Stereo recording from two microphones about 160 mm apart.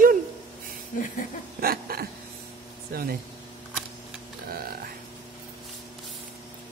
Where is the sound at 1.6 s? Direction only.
70° right (ahead or behind).